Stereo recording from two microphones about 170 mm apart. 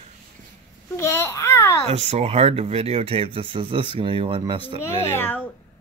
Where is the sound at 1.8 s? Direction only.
40° right (ahead or behind).